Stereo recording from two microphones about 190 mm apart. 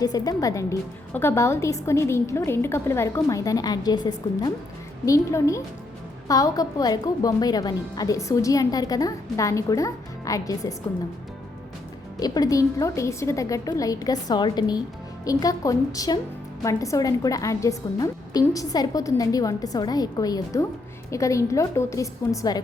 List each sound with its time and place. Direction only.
0.0 s a woman's voice: 20° left (ahead or behind)
12.2 s a woman's voice: 20° left (ahead or behind)